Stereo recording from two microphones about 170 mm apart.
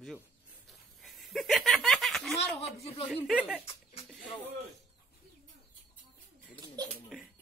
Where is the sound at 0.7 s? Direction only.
Centre (ahead or behind).